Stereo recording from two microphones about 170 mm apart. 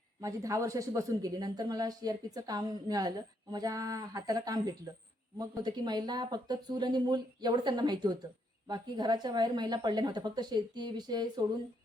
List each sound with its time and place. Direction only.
0.2 s a woman's voice: 20° right (ahead or behind)